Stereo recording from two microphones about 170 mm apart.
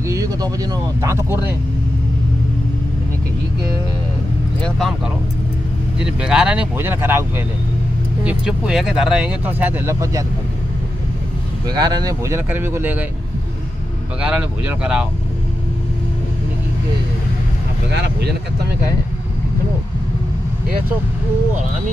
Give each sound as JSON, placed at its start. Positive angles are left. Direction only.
{"t": 0.0, "sound": "a sound", "side_deg": -20}
{"t": 1.0, "sound": "speech", "side_deg": -15}
{"t": 4.6, "sound": "speech", "side_deg": 5}
{"t": 11.6, "sound": "speech", "side_deg": -25}
{"t": 14.2, "sound": "speech", "side_deg": -5}
{"t": 17.9, "sound": "speech", "side_deg": -85}